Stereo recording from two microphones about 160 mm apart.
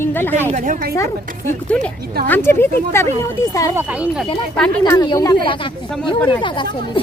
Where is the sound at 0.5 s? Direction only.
55° right (ahead or behind).